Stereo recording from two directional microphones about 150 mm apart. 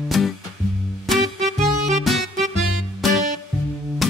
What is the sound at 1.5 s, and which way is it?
Music, 50° right (ahead or behind).